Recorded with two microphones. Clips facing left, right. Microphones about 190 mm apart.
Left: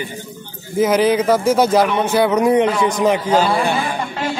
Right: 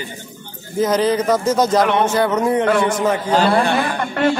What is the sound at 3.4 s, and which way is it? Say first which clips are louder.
Speech: right 2 dB; 60° right (ahead or behind).